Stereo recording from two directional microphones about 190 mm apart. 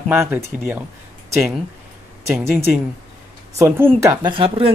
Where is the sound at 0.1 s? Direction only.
10° right (ahead or behind).